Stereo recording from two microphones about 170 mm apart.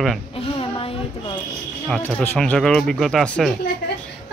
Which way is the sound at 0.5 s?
30° left (ahead or behind).